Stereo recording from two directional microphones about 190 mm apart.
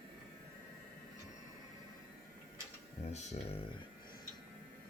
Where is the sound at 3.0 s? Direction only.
35° left (ahead or behind).